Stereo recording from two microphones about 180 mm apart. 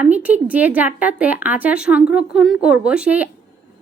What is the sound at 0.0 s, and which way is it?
A woman's voice, 10° right (ahead or behind).